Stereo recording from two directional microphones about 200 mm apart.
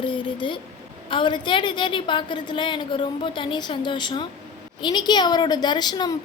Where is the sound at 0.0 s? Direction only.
25° left (ahead or behind).